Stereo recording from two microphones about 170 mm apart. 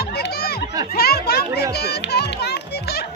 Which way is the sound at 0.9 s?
65° left (ahead or behind).